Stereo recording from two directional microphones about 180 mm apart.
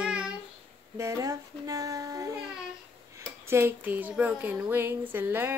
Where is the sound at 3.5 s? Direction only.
15° right (ahead or behind).